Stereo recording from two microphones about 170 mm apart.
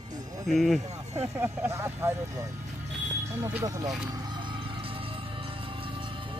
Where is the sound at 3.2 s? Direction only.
15° right (ahead or behind); by 6.4 s 30° right (ahead or behind).